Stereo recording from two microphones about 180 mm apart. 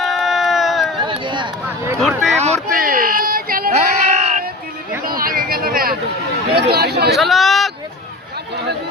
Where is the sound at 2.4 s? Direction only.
35° right (ahead or behind).